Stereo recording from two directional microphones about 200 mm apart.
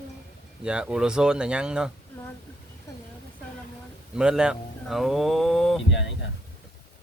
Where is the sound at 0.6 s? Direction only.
5° right (ahead or behind).